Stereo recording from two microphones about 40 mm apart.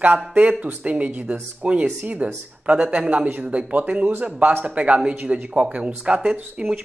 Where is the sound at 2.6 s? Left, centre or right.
Right.